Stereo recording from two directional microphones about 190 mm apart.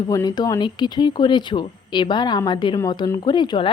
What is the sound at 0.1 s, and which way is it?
Speech, 20° left (ahead or behind).